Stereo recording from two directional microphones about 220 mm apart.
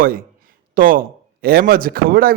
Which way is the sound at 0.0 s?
40° right (ahead or behind).